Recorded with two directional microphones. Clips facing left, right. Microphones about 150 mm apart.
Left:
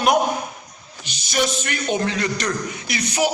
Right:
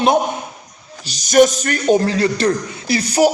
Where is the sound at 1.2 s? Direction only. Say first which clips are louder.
Right 11 dB; 45° right (ahead or behind).